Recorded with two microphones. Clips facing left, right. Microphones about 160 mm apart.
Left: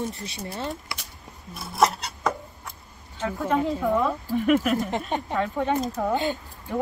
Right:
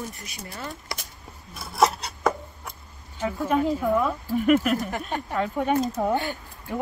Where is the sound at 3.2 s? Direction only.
10° right (ahead or behind).